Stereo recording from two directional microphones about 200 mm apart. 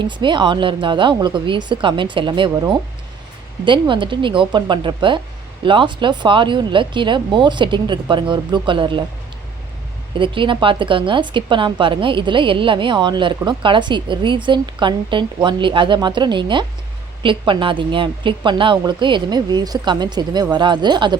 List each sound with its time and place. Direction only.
0.0 s a woman's voice: 25° right (ahead or behind)
10.2 s a woman's voice: 25° right (ahead or behind)